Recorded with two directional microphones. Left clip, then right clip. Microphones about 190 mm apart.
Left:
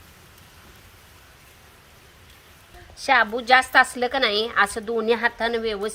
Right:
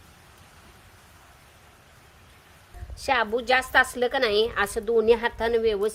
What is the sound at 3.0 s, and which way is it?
A woman's voice, 30° right (ahead or behind).